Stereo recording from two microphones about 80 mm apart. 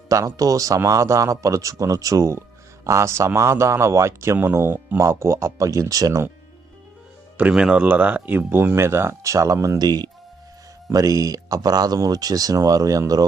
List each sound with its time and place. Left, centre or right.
0.1 s speech: right
7.3 s speech: centre; by 9.7 s right
9.7 s speech: right
10.9 s speech: right